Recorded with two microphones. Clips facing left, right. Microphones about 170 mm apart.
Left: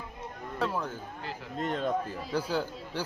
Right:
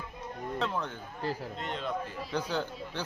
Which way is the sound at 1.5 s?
45° left (ahead or behind).